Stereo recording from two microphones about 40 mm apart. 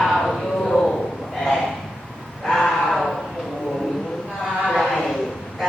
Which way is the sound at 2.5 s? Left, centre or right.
Centre.